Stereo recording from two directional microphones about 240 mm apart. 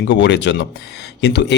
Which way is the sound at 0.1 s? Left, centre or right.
Left.